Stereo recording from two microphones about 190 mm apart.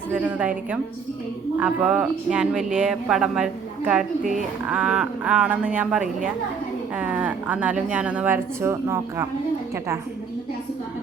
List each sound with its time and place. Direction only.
0.1 s a woman's voice: 5° right (ahead or behind)